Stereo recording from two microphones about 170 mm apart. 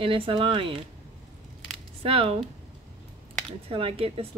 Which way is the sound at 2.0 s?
35° right (ahead or behind).